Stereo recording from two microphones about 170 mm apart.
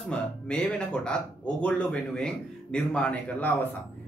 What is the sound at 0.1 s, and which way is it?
Speech, 5° left (ahead or behind).